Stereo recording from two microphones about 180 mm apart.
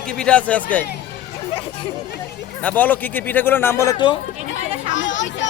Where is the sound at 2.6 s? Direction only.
10° left (ahead or behind).